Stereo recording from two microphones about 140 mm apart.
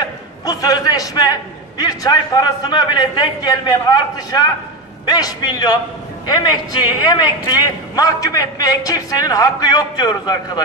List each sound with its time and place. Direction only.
0.5 s a man's voice: 25° left (ahead or behind)